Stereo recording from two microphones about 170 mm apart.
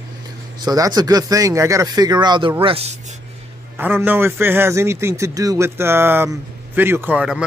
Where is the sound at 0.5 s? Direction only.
20° right (ahead or behind).